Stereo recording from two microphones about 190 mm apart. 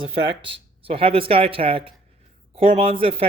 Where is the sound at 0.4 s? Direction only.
30° right (ahead or behind).